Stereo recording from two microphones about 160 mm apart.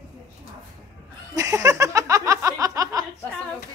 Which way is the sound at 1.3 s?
20° right (ahead or behind).